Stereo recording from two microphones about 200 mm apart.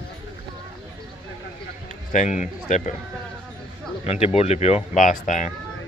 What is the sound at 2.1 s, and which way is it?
Speech, 35° left (ahead or behind).